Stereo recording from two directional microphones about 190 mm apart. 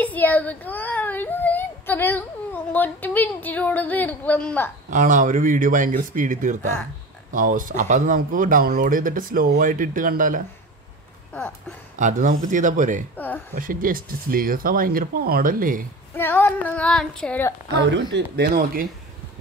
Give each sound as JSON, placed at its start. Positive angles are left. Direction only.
{"t": 0.0, "sound": "speech", "side_deg": 10}
{"t": 4.8, "sound": "speech", "side_deg": -45}
{"t": 12.0, "sound": "speech", "side_deg": -40}
{"t": 13.1, "sound": "speech", "side_deg": 10}
{"t": 13.6, "sound": "speech", "side_deg": -45}
{"t": 16.2, "sound": "speech", "side_deg": 10}
{"t": 17.7, "sound": "speech", "side_deg": -65}